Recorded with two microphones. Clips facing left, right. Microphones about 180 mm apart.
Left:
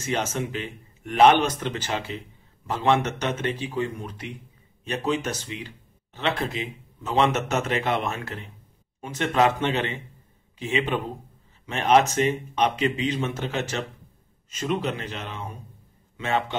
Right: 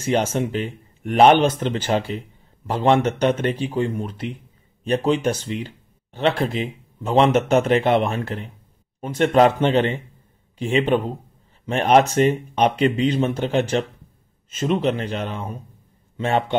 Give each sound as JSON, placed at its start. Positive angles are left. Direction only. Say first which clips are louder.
{"t": 0.1, "sound": "a man's voice", "louder": "right 7 dB", "side_deg": -30}
{"t": 15.0, "sound": "speech", "louder": "right 7 dB", "side_deg": -40}